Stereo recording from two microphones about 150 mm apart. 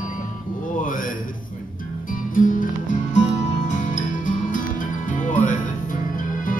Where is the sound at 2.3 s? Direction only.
65° left (ahead or behind).